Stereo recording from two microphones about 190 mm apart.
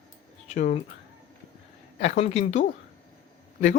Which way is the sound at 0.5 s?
40° left (ahead or behind).